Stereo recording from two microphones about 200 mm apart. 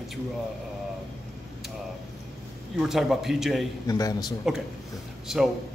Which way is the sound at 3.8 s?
20° left (ahead or behind).